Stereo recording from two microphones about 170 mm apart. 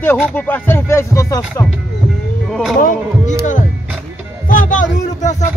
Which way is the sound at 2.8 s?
50° left (ahead or behind).